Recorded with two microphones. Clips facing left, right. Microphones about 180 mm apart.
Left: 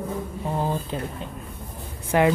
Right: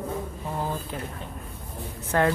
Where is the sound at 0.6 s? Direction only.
20° left (ahead or behind).